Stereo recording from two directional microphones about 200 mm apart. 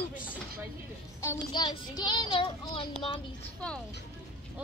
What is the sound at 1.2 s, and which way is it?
A child's voice, 20° left (ahead or behind).